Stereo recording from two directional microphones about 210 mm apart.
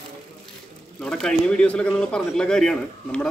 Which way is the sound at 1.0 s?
5° left (ahead or behind).